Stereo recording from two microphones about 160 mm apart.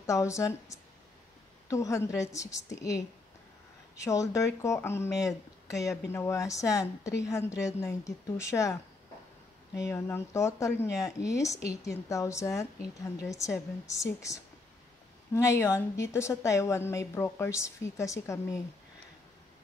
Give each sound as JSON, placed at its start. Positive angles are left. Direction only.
{"t": 0.0, "sound": "a woman's voice", "side_deg": 20}
{"t": 9.8, "sound": "a woman's voice", "side_deg": 15}